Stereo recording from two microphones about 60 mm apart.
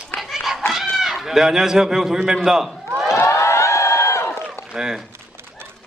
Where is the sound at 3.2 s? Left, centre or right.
Left.